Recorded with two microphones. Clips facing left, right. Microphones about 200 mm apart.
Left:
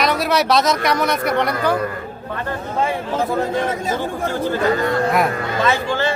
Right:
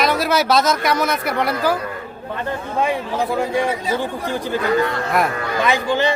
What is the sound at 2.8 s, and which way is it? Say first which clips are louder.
Speech: even; 15° right (ahead or behind).